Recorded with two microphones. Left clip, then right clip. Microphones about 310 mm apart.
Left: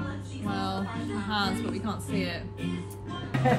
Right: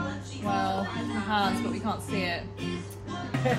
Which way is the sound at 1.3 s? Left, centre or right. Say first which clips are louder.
Right 3 dB; centre.